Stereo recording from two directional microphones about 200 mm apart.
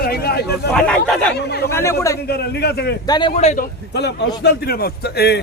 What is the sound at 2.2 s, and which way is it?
Speech, 55° left (ahead or behind).